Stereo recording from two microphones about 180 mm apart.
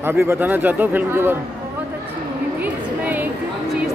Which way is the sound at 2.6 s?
10° right (ahead or behind).